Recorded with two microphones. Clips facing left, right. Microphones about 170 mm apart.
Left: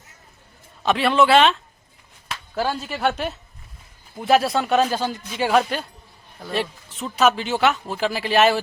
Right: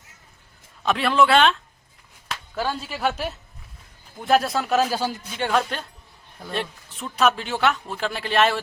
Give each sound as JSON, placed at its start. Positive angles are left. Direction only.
{"t": 0.9, "sound": "speech", "side_deg": 0}
{"t": 5.4, "sound": "a woman's voice", "side_deg": 5}